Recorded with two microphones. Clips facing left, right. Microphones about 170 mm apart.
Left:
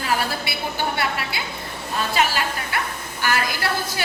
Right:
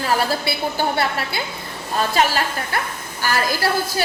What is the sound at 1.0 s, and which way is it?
A woman's voice, 40° right (ahead or behind).